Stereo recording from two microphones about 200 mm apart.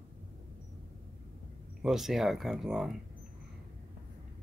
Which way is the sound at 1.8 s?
Centre (ahead or behind).